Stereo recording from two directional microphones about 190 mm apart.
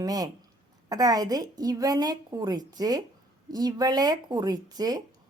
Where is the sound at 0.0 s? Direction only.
20° right (ahead or behind).